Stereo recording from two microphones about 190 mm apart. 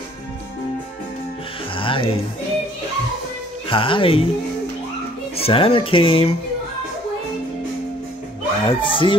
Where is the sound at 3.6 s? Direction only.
25° left (ahead or behind).